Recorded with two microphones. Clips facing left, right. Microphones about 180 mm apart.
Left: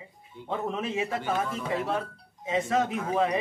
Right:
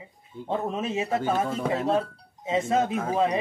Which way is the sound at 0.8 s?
25° right (ahead or behind).